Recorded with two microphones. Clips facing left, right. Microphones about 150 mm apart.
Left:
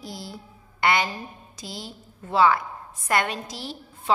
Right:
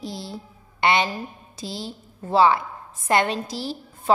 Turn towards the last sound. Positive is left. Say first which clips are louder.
# right 5 dB
turn(degrees=-35)  # may be behind; listen again after turning